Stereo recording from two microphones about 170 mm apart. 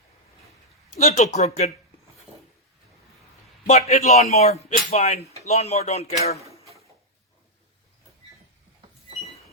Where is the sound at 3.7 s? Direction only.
40° left (ahead or behind).